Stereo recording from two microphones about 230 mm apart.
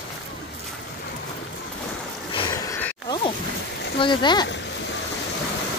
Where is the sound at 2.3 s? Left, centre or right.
Left.